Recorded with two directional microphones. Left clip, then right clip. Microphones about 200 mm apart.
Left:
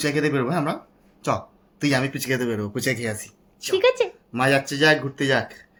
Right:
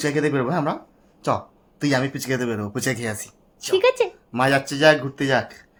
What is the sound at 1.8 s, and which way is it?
Speech, 25° right (ahead or behind).